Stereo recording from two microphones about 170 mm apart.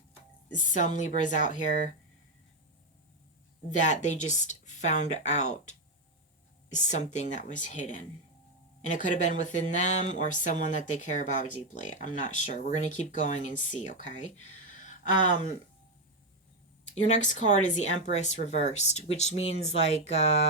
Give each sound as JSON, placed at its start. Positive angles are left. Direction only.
{"t": 0.5, "sound": "speech", "side_deg": 50}
{"t": 3.7, "sound": "speech", "side_deg": 45}
{"t": 14.3, "sound": "a sound", "side_deg": 45}
{"t": 16.9, "sound": "speech", "side_deg": 45}